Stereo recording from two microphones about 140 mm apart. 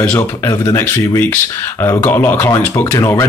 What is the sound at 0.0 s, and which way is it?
Speech, 15° left (ahead or behind).